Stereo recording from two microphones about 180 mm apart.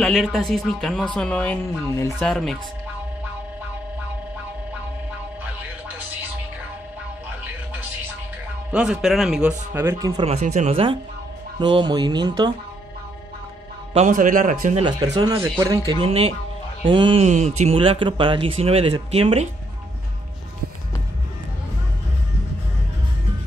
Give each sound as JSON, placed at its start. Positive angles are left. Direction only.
{"t": 0.0, "sound": "speech", "side_deg": 0}
{"t": 8.7, "sound": "speech", "side_deg": -5}
{"t": 10.2, "sound": "speech", "side_deg": -40}
{"t": 13.9, "sound": "a man's voice", "side_deg": -45}
{"t": 14.8, "sound": "speech", "side_deg": -25}
{"t": 15.9, "sound": "speech", "side_deg": -30}